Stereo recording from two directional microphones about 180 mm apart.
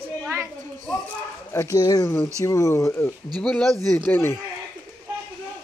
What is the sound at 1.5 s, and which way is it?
Speech, 15° left (ahead or behind).